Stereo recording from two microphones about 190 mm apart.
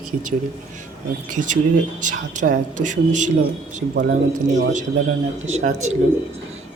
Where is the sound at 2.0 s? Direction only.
40° right (ahead or behind).